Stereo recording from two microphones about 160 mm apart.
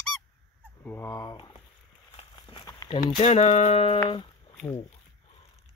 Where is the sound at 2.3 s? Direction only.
30° left (ahead or behind).